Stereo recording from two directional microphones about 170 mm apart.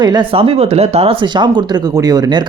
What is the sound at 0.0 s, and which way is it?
Speech, 25° right (ahead or behind).